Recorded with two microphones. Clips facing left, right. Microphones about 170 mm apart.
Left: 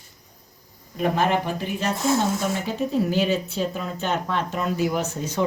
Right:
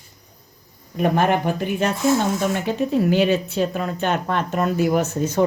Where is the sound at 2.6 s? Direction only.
65° right (ahead or behind).